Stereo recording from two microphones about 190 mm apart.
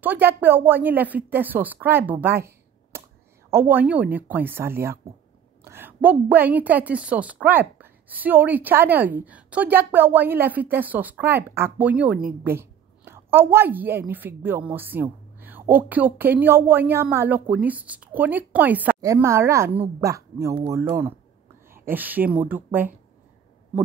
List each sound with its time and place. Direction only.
0.0 s a woman's voice: 10° right (ahead or behind)
2.2 s a sound: 15° right (ahead or behind)
3.5 s a woman's voice: 10° right (ahead or behind)
21.7 s a woman's voice: 10° right (ahead or behind)